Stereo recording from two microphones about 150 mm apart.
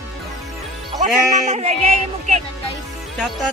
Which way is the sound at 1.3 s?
50° right (ahead or behind).